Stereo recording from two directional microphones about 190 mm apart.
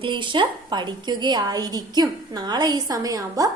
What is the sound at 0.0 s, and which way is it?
A woman's voice, 25° right (ahead or behind).